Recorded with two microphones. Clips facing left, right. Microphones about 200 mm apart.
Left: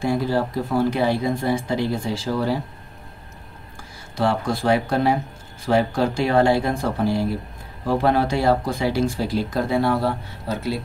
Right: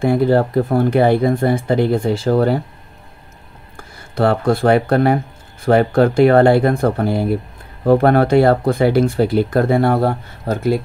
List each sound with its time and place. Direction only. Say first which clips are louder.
0.0 s speech: right 7 dB; 60° right (ahead or behind)
3.7 s speech: right 9 dB; 60° right (ahead or behind)